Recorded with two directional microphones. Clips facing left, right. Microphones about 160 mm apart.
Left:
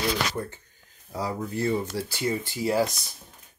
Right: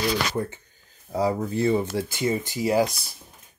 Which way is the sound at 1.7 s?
20° right (ahead or behind).